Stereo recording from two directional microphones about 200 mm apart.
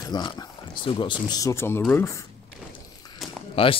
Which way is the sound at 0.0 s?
20° left (ahead or behind).